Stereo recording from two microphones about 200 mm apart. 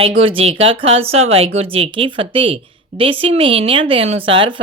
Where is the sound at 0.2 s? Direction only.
25° right (ahead or behind).